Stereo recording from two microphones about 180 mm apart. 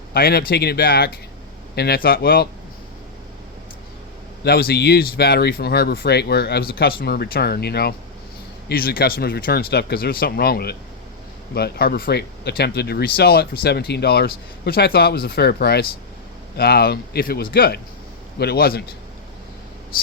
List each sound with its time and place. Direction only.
0.1 s speech: 60° left (ahead or behind)
4.4 s speech: 60° left (ahead or behind)